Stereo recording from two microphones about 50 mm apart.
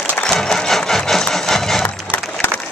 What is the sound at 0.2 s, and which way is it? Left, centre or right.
Wood, centre.